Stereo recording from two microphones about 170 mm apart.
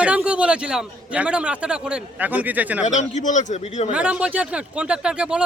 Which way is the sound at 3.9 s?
5° right (ahead or behind).